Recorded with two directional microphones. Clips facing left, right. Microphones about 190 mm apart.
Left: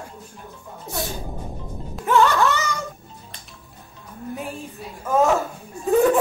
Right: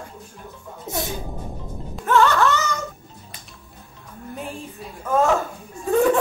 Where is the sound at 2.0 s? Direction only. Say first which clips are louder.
Even; 10° left (ahead or behind).